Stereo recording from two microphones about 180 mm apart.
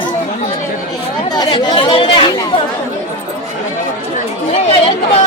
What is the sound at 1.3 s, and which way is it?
Speech, 20° left (ahead or behind).